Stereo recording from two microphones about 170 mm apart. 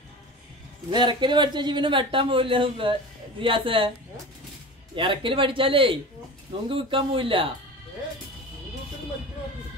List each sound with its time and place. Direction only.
0.8 s speech: 25° right (ahead or behind)
4.9 s a man's voice: 30° right (ahead or behind)